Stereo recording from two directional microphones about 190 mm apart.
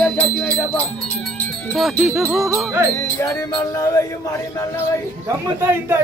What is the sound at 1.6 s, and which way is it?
Speech, centre (ahead or behind).